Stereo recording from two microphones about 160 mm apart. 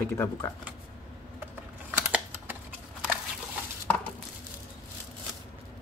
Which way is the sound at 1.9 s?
10° right (ahead or behind).